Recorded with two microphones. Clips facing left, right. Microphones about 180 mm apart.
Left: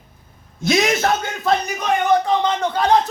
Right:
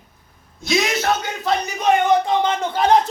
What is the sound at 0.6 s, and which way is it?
Speech, 50° left (ahead or behind).